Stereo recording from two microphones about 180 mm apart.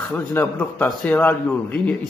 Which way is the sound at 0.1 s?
10° left (ahead or behind).